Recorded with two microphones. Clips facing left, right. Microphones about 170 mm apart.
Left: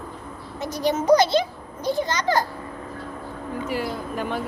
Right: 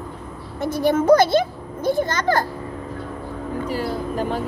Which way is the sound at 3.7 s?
35° right (ahead or behind).